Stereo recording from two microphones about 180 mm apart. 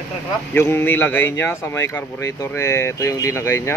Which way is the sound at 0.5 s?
15° left (ahead or behind).